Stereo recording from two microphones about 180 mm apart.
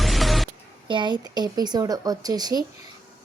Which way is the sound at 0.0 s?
Centre (ahead or behind).